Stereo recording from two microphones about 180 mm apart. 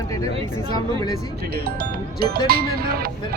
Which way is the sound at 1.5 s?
60° right (ahead or behind).